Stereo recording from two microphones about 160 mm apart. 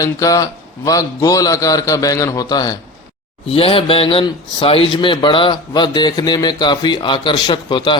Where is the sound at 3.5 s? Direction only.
35° left (ahead or behind).